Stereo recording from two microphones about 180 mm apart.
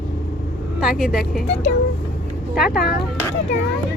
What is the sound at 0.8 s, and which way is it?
Speech, 5° right (ahead or behind).